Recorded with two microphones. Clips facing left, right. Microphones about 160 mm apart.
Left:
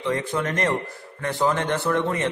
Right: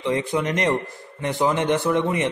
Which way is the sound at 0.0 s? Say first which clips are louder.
Right 2 dB; 15° right (ahead or behind).